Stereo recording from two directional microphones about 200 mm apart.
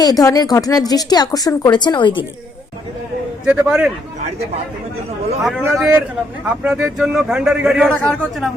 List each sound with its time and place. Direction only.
0.0 s speech: 20° left (ahead or behind)
3.4 s a man's voice: 5° right (ahead or behind)
5.4 s a man's voice: centre (ahead or behind)